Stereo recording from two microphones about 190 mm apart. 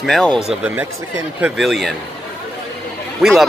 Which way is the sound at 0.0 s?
5° left (ahead or behind).